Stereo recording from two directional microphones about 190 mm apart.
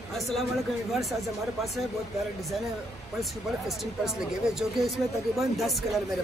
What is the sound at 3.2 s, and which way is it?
Speech, centre (ahead or behind).